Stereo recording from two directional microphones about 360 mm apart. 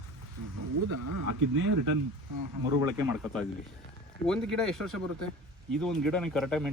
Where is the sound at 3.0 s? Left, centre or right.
Centre.